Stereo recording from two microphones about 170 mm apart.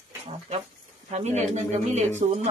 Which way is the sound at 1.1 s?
40° right (ahead or behind).